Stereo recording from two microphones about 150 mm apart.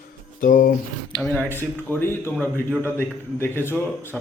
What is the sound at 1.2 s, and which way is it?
A man's voice, 15° left (ahead or behind).